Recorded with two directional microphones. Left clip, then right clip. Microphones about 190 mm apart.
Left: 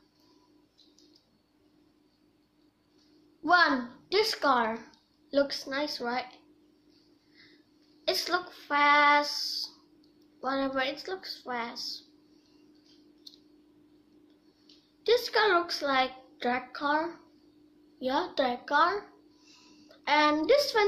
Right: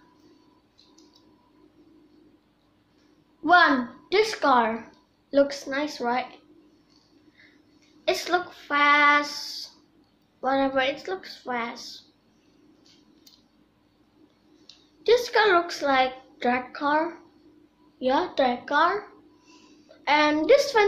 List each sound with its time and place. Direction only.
3.4 s a woman's voice: 15° left (ahead or behind)
8.0 s a woman's voice: 15° left (ahead or behind)
15.0 s a woman's voice: 10° left (ahead or behind)
20.1 s a woman's voice: 15° left (ahead or behind)